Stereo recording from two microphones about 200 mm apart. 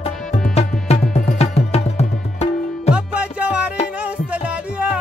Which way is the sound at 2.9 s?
5° right (ahead or behind).